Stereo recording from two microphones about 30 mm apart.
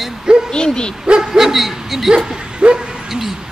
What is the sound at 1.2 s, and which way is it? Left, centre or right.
Speech, centre.